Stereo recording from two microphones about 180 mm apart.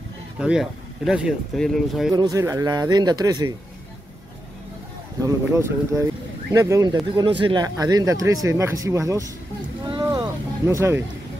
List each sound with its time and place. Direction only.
0.4 s speech: 5° right (ahead or behind)
2.1 s speech: 20° right (ahead or behind)
5.2 s speech: 15° right (ahead or behind)
9.8 s a sound: 25° right (ahead or behind)